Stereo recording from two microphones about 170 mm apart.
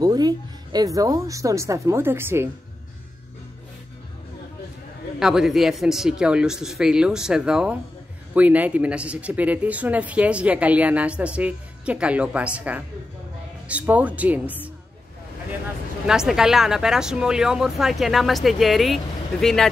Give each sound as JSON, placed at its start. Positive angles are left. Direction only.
{"t": 0.0, "sound": "speech", "side_deg": -25}
{"t": 5.2, "sound": "a woman's voice", "side_deg": -5}
{"t": 16.1, "sound": "a woman's voice", "side_deg": -5}